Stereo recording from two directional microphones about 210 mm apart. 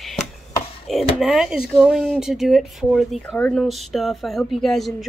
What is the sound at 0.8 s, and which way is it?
Speech, centre (ahead or behind).